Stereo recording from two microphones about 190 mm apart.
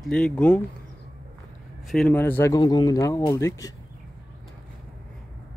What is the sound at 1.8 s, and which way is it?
Speech, 5° left (ahead or behind).